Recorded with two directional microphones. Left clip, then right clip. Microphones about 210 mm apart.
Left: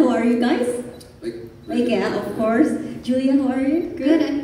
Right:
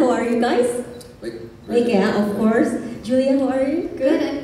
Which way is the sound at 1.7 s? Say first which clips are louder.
Right 3 dB; 45° left (ahead or behind).